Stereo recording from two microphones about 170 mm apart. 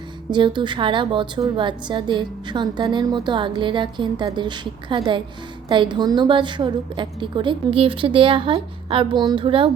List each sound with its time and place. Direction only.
0.3 s a woman's voice: 25° right (ahead or behind)